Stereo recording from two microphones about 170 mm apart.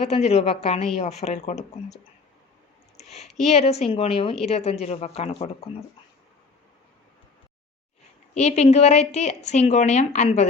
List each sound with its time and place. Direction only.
0.0 s speech: 40° left (ahead or behind)
3.0 s a sound: 40° left (ahead or behind)
3.4 s speech: 40° left (ahead or behind)
8.4 s speech: 40° left (ahead or behind)